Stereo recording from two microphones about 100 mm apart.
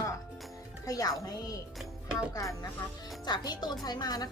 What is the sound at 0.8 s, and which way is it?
Speech, 35° left (ahead or behind).